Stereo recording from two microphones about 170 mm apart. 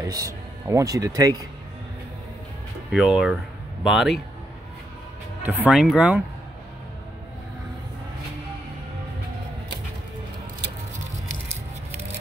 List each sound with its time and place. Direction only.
0.0 s speech: 20° right (ahead or behind)
2.9 s speech: centre (ahead or behind)
5.4 s speech: 10° right (ahead or behind)